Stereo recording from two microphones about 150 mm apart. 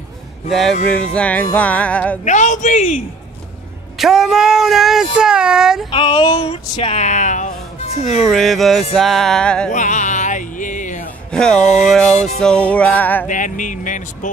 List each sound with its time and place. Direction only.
0.5 s speech: centre (ahead or behind)
1.1 s music: 10° left (ahead or behind)
2.2 s speech: 55° left (ahead or behind)
4.0 s speech: centre (ahead or behind)
5.9 s music: 35° left (ahead or behind); by 8.2 s 50° left (ahead or behind)
8.2 s speech: centre (ahead or behind)
9.7 s music: 55° left (ahead or behind)
11.3 s speech: 5° left (ahead or behind)
12.4 s music: 5° left (ahead or behind)
13.3 s speech: 60° left (ahead or behind)